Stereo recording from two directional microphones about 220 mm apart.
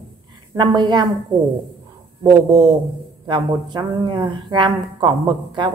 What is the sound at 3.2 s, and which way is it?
Speech, 20° right (ahead or behind).